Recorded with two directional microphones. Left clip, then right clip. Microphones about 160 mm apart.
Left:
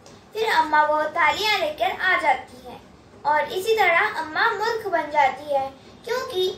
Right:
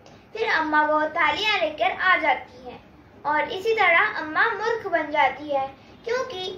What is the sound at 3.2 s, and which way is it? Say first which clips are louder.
A child's voice: left 2 dB; 15° right (ahead or behind).